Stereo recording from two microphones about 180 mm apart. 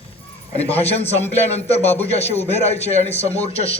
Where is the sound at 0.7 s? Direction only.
35° left (ahead or behind).